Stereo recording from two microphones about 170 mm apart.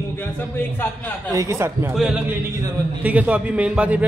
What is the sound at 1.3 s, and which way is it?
Speech, 15° right (ahead or behind).